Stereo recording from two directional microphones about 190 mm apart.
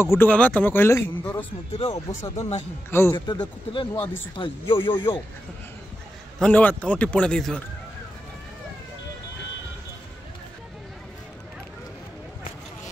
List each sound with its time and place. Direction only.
0.0 s speech: 10° left (ahead or behind)
1.7 s speech: 30° left (ahead or behind)
2.9 s speech: 10° left (ahead or behind)
3.3 s speech: 25° left (ahead or behind)
6.4 s a man's voice: 10° left (ahead or behind)